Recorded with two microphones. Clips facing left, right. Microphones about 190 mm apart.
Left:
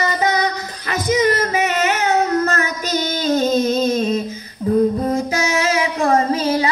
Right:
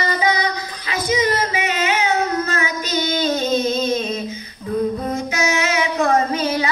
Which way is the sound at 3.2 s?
40° left (ahead or behind).